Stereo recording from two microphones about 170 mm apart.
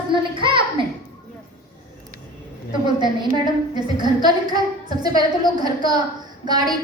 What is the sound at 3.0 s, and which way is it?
A woman's voice, 25° right (ahead or behind).